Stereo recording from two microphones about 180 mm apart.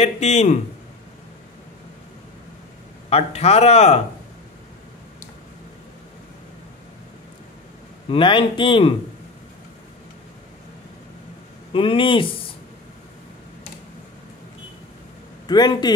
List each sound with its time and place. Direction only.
0.0 s speech: 40° left (ahead or behind)
3.1 s speech: 35° left (ahead or behind)
8.1 s a man's voice: 25° left (ahead or behind)
11.7 s a man's voice: 30° left (ahead or behind)
15.4 s a man's voice: 25° left (ahead or behind)